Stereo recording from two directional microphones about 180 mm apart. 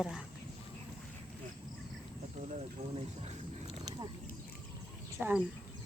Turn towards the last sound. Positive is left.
turn(degrees=-10)  # may be behind; listen again after turning